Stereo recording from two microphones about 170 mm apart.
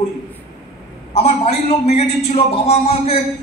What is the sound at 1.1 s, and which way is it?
A man's voice, 35° left (ahead or behind).